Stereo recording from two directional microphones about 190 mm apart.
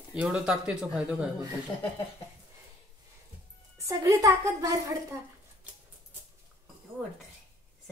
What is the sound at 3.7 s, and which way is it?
A woman's voice, 15° right (ahead or behind).